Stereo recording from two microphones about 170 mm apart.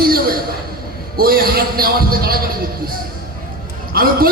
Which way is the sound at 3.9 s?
60° right (ahead or behind).